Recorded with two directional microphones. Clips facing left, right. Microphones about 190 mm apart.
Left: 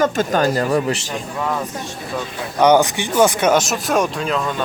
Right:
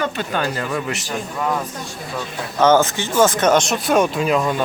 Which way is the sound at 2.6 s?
15° left (ahead or behind).